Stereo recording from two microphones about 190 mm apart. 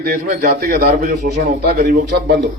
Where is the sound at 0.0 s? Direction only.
50° right (ahead or behind).